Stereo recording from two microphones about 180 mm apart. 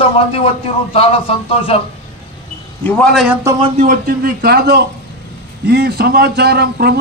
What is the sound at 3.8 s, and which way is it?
Speech, 55° right (ahead or behind).